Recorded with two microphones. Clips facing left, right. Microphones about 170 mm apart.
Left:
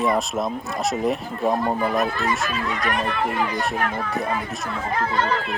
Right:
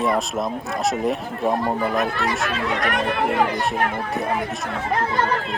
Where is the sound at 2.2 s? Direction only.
80° right.